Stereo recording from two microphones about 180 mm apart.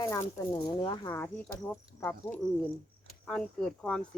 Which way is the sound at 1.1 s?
10° left (ahead or behind).